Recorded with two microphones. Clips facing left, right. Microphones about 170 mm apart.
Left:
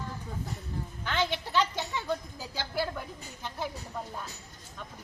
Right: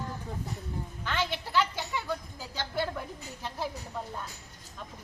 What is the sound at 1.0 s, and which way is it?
A woman's voice, 15° left (ahead or behind).